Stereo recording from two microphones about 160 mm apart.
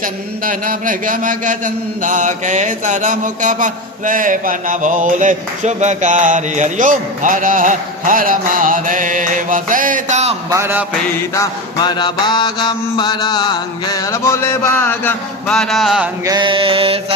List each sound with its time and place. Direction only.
0.0 s a sound: 60° right (ahead or behind)
10.5 s music: 15° right (ahead or behind)
11.3 s mantra: 25° left (ahead or behind); by 16.0 s centre (ahead or behind)
16.2 s mantra: 25° right (ahead or behind)